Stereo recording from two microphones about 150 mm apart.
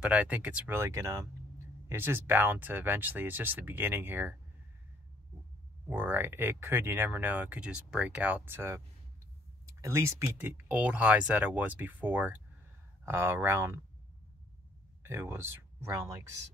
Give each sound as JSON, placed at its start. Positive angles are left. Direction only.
{"t": 0.0, "sound": "speech", "side_deg": -10}
{"t": 5.9, "sound": "speech", "side_deg": -15}
{"t": 15.0, "sound": "speech", "side_deg": -15}